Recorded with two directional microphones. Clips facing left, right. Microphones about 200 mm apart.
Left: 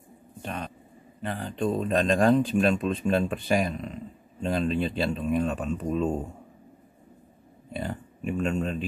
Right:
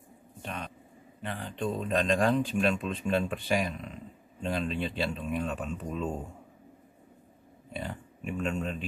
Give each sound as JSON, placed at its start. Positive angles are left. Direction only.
{"t": 0.4, "sound": "a sound", "side_deg": 40}
{"t": 1.2, "sound": "speech", "side_deg": 40}
{"t": 7.7, "sound": "speech", "side_deg": 40}